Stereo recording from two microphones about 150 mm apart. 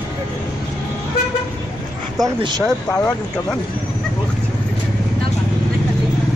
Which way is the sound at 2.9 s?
20° left (ahead or behind).